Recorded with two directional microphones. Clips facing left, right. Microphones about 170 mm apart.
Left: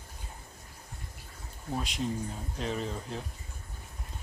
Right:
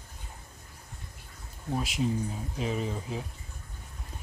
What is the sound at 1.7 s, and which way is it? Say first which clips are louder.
Speech: right 3 dB; 5° right (ahead or behind).